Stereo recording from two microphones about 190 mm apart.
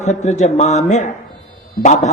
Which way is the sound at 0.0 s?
35° left (ahead or behind).